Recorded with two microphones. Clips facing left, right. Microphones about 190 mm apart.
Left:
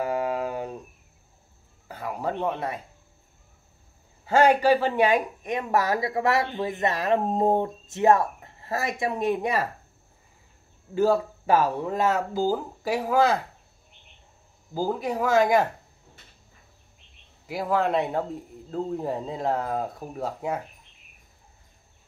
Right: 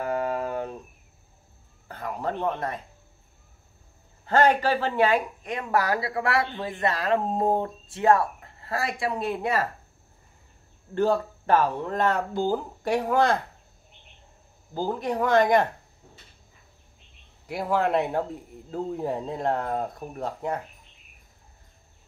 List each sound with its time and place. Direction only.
0.0 s a sound: 10° left (ahead or behind)
1.9 s a sound: 10° left (ahead or behind)
4.3 s speech: 10° left (ahead or behind)
11.0 s speech: 5° left (ahead or behind)
14.7 s speech: 5° left (ahead or behind)
17.5 s speech: centre (ahead or behind)